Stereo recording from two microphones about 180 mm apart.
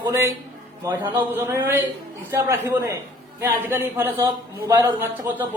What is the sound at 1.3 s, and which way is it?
Speech, 15° right (ahead or behind).